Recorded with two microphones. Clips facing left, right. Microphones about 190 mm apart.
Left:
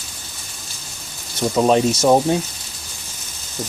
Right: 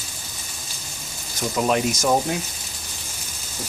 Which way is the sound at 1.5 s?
30° left (ahead or behind).